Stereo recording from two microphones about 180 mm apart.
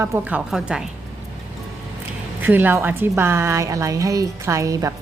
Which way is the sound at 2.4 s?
10° right (ahead or behind).